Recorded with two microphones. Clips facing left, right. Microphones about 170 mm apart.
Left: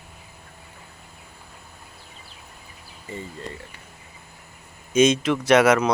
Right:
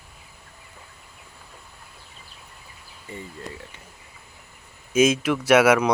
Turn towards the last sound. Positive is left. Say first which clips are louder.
# even
turn(degrees=-10)  # may be behind; listen again after turning